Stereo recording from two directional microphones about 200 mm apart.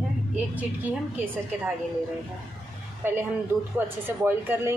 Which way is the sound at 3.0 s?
10° right (ahead or behind).